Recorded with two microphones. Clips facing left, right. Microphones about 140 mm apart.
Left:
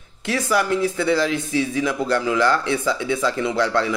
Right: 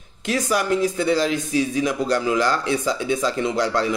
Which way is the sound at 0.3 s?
15° right (ahead or behind).